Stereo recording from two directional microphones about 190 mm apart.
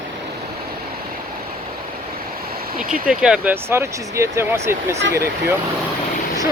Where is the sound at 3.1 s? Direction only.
5° right (ahead or behind).